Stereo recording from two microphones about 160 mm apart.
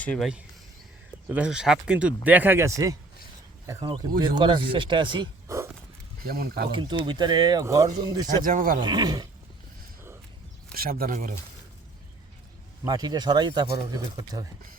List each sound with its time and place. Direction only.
0.0 s speech: 10° left (ahead or behind)
1.3 s speech: 5° right (ahead or behind)
4.2 s speech: 30° right (ahead or behind)
6.2 s speech: 70° right (ahead or behind)
6.7 s speech: 30° right (ahead or behind)
8.4 s speech: 60° right (ahead or behind)
8.8 s speech: 25° right (ahead or behind)
10.8 s speech: 65° right (ahead or behind)
12.8 s speech: 25° right (ahead or behind)